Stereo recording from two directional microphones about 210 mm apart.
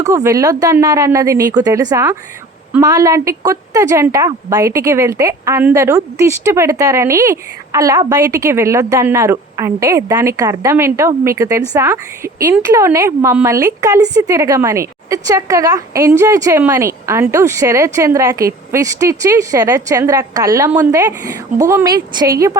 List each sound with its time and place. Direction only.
0.0 s a woman's voice: 15° right (ahead or behind)